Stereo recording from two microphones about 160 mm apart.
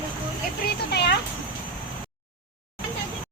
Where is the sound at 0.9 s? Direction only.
90° left.